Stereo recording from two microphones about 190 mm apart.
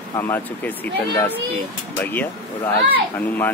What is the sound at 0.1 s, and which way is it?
Speech, 10° left (ahead or behind).